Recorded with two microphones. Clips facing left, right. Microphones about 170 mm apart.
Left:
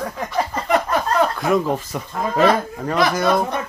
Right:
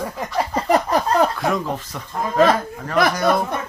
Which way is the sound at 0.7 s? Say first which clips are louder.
Right 2 dB; 35° right (ahead or behind).